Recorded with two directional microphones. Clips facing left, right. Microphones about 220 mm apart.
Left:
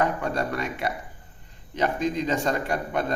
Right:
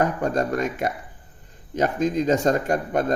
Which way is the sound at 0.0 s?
45° right (ahead or behind).